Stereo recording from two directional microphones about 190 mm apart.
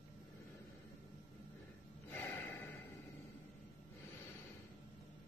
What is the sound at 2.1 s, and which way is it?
Snort, 10° left (ahead or behind).